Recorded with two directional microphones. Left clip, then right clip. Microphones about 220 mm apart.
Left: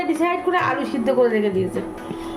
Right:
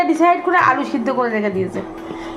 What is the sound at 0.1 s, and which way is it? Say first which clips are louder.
Speech: right 6 dB; 5° right (ahead or behind).